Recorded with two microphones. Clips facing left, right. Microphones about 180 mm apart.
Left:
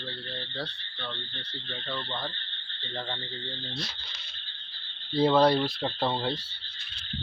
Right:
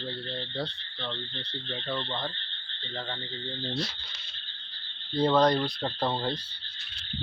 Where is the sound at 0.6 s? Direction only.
20° right (ahead or behind).